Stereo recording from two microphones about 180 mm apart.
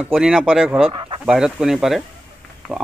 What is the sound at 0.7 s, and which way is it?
Speech, 30° right (ahead or behind).